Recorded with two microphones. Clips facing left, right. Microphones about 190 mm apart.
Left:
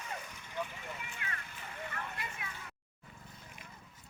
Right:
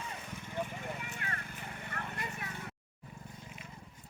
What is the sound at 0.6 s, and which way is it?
Horse, 50° right (ahead or behind).